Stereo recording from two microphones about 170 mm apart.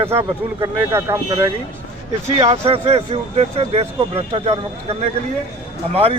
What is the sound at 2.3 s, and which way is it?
Speech, 35° right (ahead or behind).